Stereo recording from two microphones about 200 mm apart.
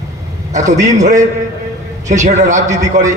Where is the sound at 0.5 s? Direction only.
35° right (ahead or behind).